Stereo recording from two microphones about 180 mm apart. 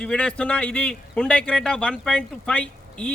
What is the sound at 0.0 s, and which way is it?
A man's voice, 5° left (ahead or behind).